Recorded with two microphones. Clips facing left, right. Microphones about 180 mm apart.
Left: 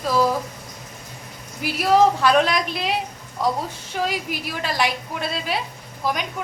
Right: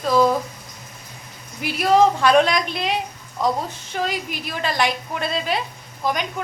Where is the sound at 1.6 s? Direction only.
5° left (ahead or behind).